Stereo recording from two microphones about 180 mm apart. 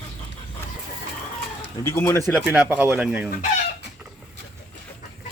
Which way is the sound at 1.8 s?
15° left (ahead or behind).